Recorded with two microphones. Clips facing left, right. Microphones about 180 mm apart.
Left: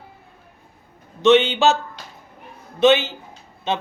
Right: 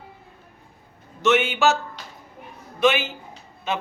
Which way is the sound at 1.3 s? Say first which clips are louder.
Left 6 dB; 25° left (ahead or behind).